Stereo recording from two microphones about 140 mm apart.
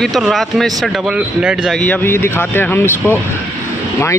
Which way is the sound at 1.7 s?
10° left (ahead or behind).